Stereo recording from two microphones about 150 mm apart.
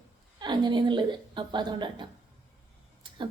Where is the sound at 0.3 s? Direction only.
30° right (ahead or behind).